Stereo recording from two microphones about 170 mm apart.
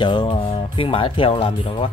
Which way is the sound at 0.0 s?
30° left (ahead or behind).